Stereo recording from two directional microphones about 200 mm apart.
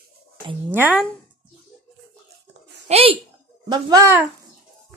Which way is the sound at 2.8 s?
30° right (ahead or behind).